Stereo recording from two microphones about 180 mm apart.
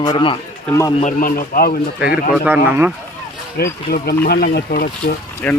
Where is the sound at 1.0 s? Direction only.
50° left (ahead or behind).